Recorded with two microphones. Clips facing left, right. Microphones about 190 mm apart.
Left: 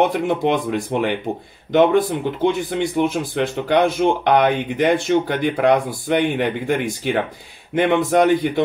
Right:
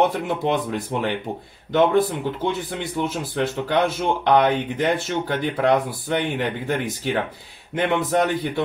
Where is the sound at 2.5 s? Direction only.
15° left (ahead or behind).